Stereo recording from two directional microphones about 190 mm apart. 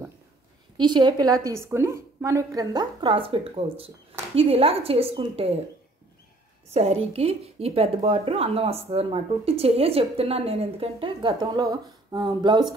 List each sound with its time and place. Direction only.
0.7 s a woman's voice: 25° right (ahead or behind)
6.7 s a woman's voice: 30° right (ahead or behind)